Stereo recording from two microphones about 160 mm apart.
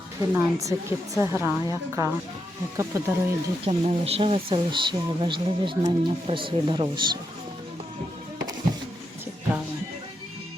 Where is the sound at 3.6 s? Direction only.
40° right (ahead or behind).